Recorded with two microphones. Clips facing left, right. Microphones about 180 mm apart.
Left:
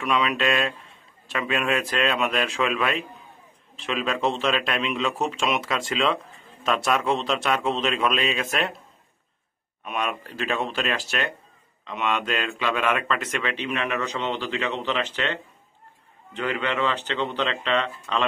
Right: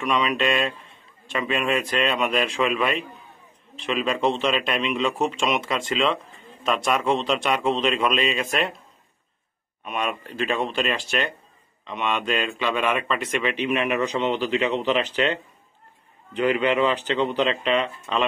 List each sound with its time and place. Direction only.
0.0 s a man's voice: centre (ahead or behind)
5.8 s a man's voice: 10° right (ahead or behind)
9.8 s a man's voice: centre (ahead or behind)
16.3 s speech: 15° right (ahead or behind)